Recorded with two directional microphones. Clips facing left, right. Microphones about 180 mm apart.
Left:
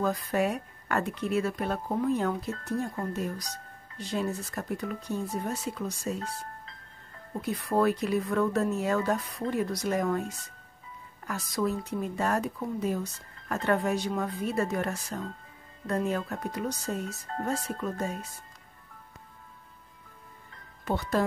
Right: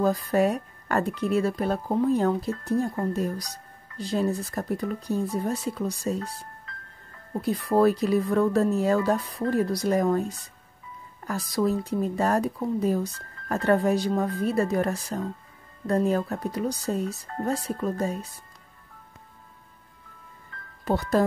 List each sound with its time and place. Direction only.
0.0 s speech: 35° right (ahead or behind)
7.4 s speech: 35° right (ahead or behind)
20.8 s speech: 35° right (ahead or behind)